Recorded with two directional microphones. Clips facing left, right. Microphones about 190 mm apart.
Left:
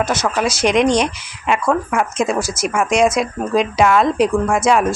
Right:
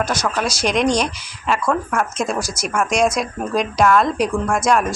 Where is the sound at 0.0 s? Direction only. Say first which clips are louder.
Left 3 dB; 10° right (ahead or behind).